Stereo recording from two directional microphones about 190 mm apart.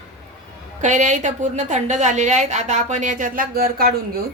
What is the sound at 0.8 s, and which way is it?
A woman's voice, 40° right (ahead or behind).